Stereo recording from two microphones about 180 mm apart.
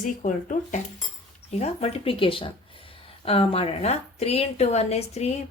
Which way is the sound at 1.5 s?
35° left (ahead or behind).